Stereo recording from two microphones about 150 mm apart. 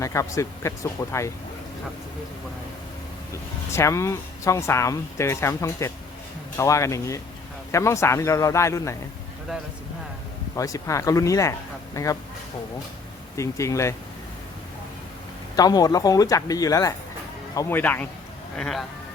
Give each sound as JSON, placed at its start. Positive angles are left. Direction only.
{"t": 0.0, "sound": "speech", "side_deg": 20}
{"t": 3.3, "sound": "speech", "side_deg": 20}
{"t": 10.5, "sound": "speech", "side_deg": 20}
{"t": 13.3, "sound": "speech", "side_deg": 20}
{"t": 15.5, "sound": "speech", "side_deg": 25}
{"t": 17.7, "sound": "speech", "side_deg": 10}